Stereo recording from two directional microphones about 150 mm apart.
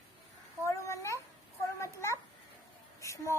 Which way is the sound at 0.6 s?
20° left (ahead or behind).